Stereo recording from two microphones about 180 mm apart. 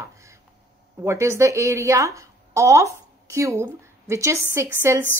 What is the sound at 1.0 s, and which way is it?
A woman's voice, 15° right (ahead or behind).